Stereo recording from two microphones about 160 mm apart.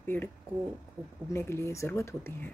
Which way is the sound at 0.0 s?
10° left (ahead or behind).